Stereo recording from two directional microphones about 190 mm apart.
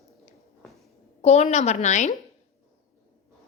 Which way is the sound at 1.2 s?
35° left (ahead or behind).